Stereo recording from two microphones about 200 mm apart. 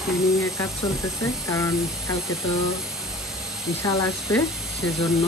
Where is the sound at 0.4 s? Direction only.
15° left (ahead or behind).